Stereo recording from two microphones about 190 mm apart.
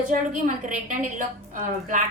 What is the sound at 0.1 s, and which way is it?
A woman's voice, 45° right (ahead or behind).